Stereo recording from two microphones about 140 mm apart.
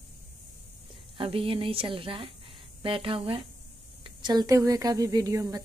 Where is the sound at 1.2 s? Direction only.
40° right (ahead or behind).